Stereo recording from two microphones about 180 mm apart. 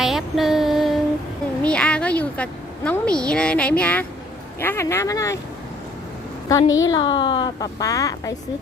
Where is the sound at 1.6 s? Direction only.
5° left (ahead or behind).